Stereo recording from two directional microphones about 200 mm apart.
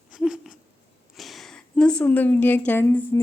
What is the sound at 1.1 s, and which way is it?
A woman's voice, centre (ahead or behind).